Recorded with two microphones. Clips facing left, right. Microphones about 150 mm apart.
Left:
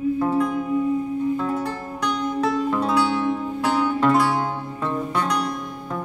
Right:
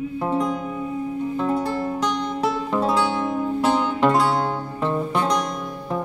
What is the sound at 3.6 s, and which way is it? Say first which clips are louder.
Music: even; 20° right (ahead or behind).